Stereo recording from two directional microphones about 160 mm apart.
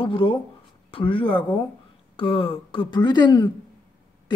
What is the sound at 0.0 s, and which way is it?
Speech, 35° left (ahead or behind).